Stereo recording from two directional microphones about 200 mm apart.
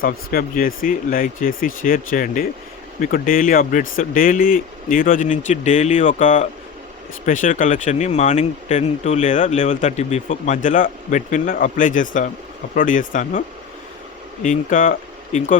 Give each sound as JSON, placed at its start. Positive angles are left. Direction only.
{"t": 0.0, "sound": "speech", "side_deg": 45}
{"t": 14.4, "sound": "speech", "side_deg": 40}